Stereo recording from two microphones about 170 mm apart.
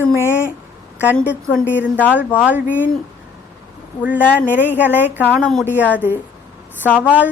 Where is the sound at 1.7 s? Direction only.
10° right (ahead or behind).